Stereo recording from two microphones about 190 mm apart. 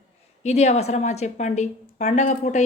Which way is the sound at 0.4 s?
35° left (ahead or behind).